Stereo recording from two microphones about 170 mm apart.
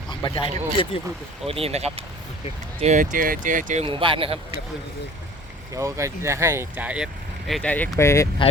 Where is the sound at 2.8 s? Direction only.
50° right (ahead or behind).